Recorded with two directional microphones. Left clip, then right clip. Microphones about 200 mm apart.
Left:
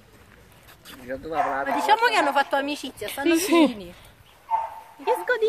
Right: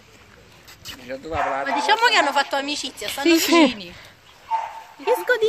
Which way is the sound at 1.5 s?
40° left (ahead or behind).